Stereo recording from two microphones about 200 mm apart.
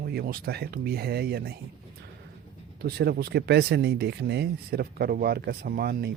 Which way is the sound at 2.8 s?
55° right (ahead or behind).